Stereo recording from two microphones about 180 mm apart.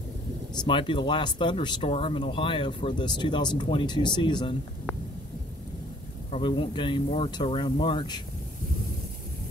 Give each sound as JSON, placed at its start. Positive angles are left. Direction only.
{"t": 0.6, "sound": "speech", "side_deg": 25}
{"t": 6.3, "sound": "speech", "side_deg": 25}